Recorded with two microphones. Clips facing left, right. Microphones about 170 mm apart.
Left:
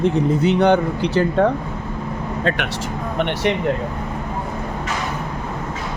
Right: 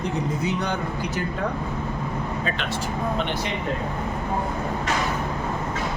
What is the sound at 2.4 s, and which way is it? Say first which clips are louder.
Speech: left 5 dB; 75° left (ahead or behind).